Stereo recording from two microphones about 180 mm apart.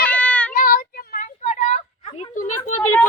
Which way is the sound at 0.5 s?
55° left (ahead or behind).